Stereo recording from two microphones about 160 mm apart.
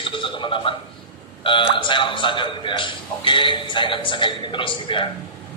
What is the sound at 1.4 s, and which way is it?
A man's voice, 30° left (ahead or behind).